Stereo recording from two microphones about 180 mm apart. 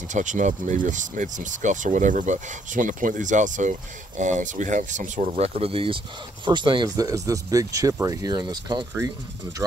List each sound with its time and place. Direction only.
0.1 s speech: 45° right (ahead or behind); by 9.1 s 20° right (ahead or behind)